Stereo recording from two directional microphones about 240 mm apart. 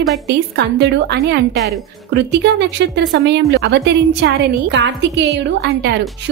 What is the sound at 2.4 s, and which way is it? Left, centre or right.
A woman's voice, right.